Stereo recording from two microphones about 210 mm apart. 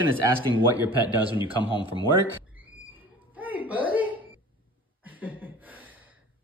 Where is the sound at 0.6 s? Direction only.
10° right (ahead or behind).